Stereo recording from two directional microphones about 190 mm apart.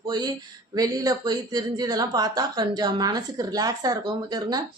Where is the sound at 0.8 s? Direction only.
20° right (ahead or behind).